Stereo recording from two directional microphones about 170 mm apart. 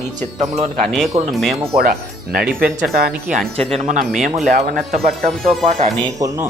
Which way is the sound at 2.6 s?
60° right (ahead or behind).